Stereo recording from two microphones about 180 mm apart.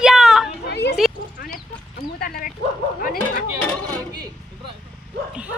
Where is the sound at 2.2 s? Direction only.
55° left (ahead or behind).